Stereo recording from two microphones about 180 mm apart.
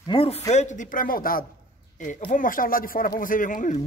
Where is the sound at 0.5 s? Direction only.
40° left (ahead or behind).